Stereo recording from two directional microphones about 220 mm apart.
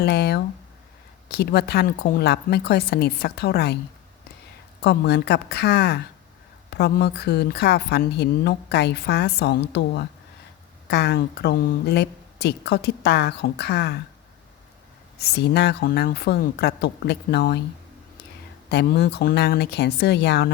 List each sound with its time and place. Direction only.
0.0 s a woman's voice: 45° left (ahead or behind)
4.8 s a woman's voice: 50° left (ahead or behind)
15.2 s a woman's voice: 50° left (ahead or behind)
18.7 s a woman's voice: 50° left (ahead or behind)